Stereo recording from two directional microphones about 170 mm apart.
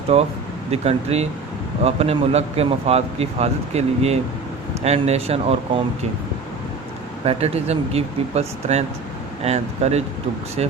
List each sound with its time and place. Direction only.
0.1 s speech: 40° right (ahead or behind)
7.3 s speech: 40° right (ahead or behind)